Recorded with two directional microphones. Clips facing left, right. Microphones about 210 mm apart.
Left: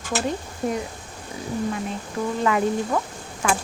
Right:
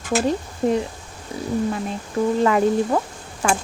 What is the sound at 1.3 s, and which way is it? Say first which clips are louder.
Wild animals: right 5 dB; 30° right (ahead or behind).